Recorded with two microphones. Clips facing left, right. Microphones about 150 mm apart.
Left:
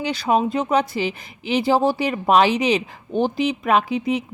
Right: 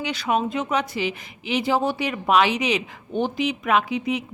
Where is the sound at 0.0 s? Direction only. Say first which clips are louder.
Left 4 dB; 35° left (ahead or behind).